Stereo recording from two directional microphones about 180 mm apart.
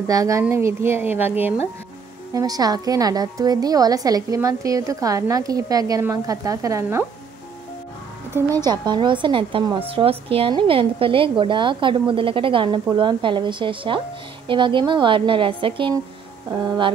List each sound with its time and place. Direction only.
0.0 s a woman's voice: 20° right (ahead or behind)
8.5 s a woman's voice: 25° right (ahead or behind)